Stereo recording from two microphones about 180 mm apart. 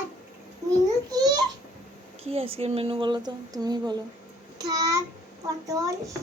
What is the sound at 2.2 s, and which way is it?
A woman's voice, 35° right (ahead or behind).